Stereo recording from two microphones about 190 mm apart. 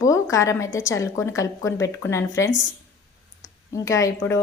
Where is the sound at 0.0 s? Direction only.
15° left (ahead or behind).